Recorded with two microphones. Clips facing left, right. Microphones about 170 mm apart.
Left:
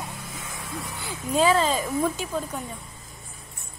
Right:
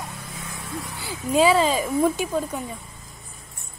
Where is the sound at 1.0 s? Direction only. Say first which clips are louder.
Right 3 dB; 10° right (ahead or behind).